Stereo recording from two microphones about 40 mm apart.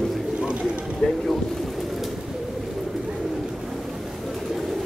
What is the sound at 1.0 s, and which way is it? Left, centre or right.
Boat, centre.